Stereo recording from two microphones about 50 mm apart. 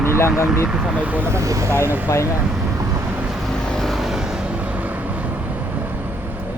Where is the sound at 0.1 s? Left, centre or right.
Left.